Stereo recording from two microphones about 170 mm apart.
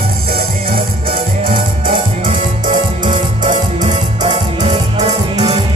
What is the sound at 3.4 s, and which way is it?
Music, 45° right (ahead or behind).